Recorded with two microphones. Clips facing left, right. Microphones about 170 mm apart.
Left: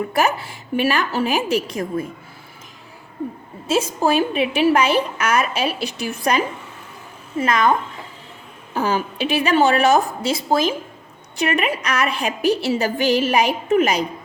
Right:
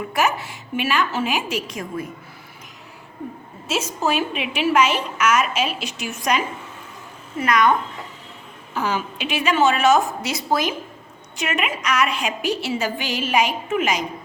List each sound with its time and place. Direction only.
0.1 s a woman's voice: 35° left (ahead or behind)
4.0 s a woman's voice: 35° left (ahead or behind)
8.7 s a woman's voice: 35° left (ahead or behind)